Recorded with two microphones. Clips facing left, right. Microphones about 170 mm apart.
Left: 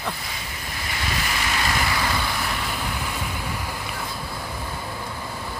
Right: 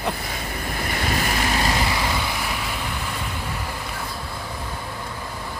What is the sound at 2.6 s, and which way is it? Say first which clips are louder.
Vehicle: even; centre (ahead or behind).